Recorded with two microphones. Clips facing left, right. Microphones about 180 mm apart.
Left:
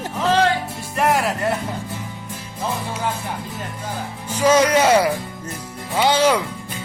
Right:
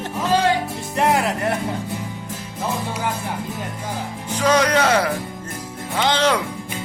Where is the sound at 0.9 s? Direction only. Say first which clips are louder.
Even; 20° right (ahead or behind).